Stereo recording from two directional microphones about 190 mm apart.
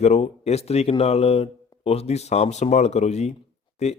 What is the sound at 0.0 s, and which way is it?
Speech, 35° left (ahead or behind).